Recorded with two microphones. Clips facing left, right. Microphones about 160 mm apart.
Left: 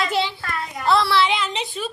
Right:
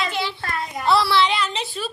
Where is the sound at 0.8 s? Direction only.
Centre (ahead or behind).